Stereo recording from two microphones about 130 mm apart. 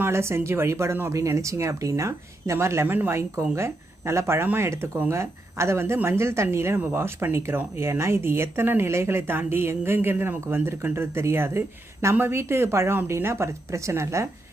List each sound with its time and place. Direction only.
0.0 s speech: 20° right (ahead or behind)